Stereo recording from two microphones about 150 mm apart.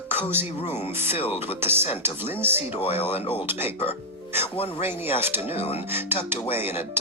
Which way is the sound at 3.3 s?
15° right (ahead or behind).